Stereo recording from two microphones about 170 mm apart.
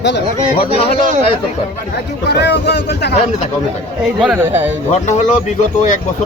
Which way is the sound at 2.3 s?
80° left.